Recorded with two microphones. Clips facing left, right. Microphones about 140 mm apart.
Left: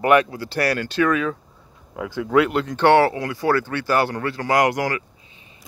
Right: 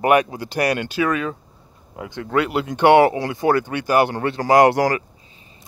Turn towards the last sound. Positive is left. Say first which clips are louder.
# right 5 dB
turn(degrees=-35)  # may be behind; listen again after turning